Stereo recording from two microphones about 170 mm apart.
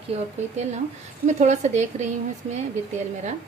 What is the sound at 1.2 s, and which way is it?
Speech, 45° right (ahead or behind).